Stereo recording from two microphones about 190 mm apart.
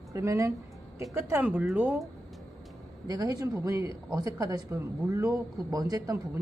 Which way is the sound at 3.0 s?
20° right (ahead or behind).